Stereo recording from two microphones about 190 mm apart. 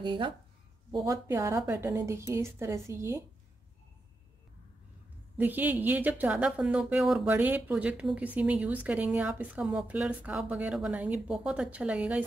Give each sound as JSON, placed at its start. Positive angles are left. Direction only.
{"t": 0.0, "sound": "a woman's voice", "side_deg": -25}
{"t": 5.4, "sound": "a woman's voice", "side_deg": -10}